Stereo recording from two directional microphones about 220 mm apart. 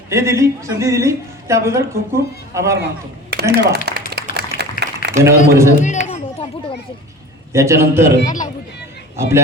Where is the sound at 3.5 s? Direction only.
50° right (ahead or behind).